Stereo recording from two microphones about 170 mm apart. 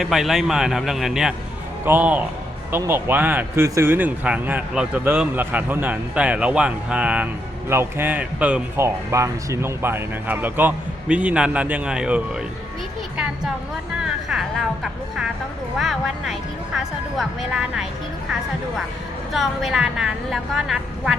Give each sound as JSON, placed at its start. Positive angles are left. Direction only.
{"t": 0.0, "sound": "a woman's voice", "side_deg": 0}
{"t": 14.0, "sound": "speech", "side_deg": 0}
{"t": 15.8, "sound": "a woman's voice", "side_deg": 0}
{"t": 19.3, "sound": "a woman's voice", "side_deg": 0}